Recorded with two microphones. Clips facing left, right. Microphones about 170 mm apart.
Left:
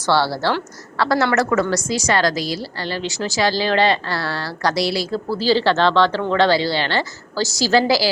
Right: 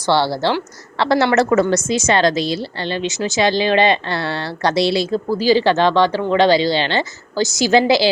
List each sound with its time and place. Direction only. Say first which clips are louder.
0.0 s a woman's voice: right 2 dB; 20° right (ahead or behind)